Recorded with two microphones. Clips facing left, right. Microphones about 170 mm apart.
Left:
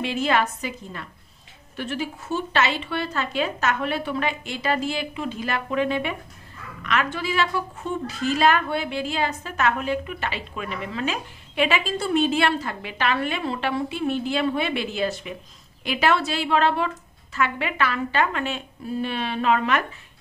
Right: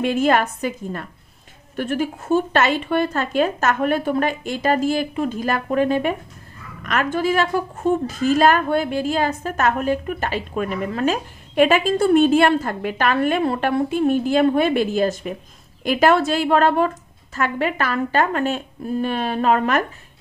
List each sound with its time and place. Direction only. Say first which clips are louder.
0.0 s a woman's voice: right 5 dB; 50° right (ahead or behind)